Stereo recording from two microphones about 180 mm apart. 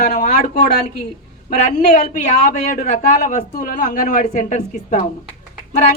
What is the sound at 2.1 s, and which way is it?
Speech, 45° left (ahead or behind).